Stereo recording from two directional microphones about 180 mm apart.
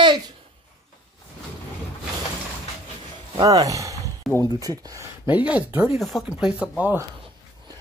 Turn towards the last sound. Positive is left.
turn(degrees=-10)  # may be behind; listen again after turning